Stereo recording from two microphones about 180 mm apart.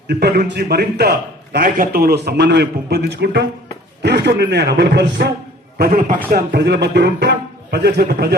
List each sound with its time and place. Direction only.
0.1 s a man's voice: 60° right (ahead or behind)
5.7 s a man's voice: 55° right (ahead or behind)
6.3 s a man's voice: 65° right (ahead or behind)